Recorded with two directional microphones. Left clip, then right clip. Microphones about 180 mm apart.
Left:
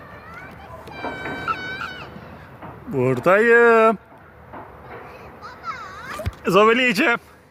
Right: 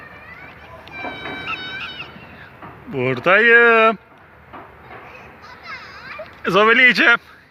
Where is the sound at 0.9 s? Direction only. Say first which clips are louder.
Even; 60° left (ahead or behind).